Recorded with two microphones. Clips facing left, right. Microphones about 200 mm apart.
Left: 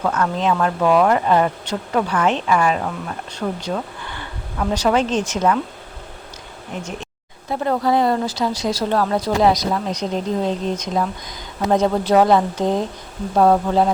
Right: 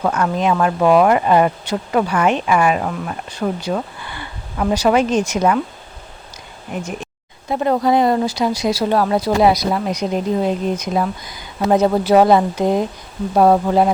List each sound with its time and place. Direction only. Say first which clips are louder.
0.0 s speech: right 2 dB; 10° right (ahead or behind)
7.5 s speech: right 3 dB; 15° right (ahead or behind)